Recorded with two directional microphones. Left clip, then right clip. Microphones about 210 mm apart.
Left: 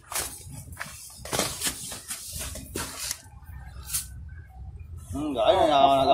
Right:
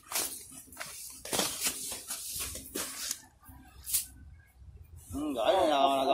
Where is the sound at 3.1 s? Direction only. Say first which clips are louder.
Left 4 dB; 5° right (ahead or behind).